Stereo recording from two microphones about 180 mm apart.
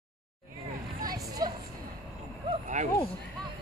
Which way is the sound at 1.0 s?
20° right (ahead or behind).